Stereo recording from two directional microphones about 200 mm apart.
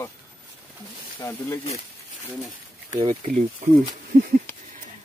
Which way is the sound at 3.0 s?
35° right (ahead or behind).